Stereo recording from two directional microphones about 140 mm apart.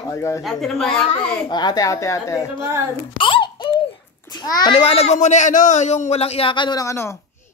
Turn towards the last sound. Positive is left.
turn(degrees=20)  # may be behind; listen again after turning